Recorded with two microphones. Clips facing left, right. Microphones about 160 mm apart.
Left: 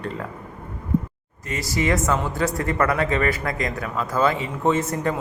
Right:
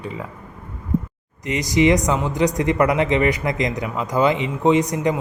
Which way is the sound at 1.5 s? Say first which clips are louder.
Right 6 dB; 20° right (ahead or behind).